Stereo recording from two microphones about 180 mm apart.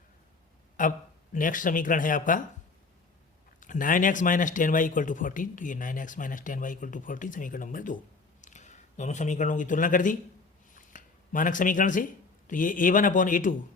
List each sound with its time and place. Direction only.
0.8 s speech: 45° left (ahead or behind)
3.6 s speech: 45° left (ahead or behind)
10.8 s a sound: 45° left (ahead or behind)
12.5 s speech: 45° left (ahead or behind)